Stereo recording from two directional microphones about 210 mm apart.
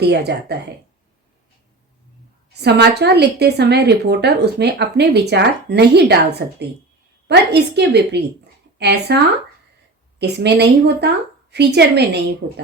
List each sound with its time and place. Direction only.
0.0 s a woman's voice: 50° right (ahead or behind)
2.5 s a woman's voice: 50° right (ahead or behind)
7.3 s a woman's voice: 50° right (ahead or behind)
10.2 s a woman's voice: 50° right (ahead or behind)